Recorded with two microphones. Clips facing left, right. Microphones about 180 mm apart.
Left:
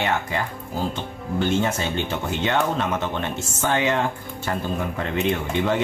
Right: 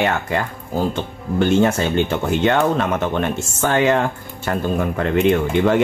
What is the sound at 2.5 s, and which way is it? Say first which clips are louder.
Speech: right 5 dB; 55° right (ahead or behind).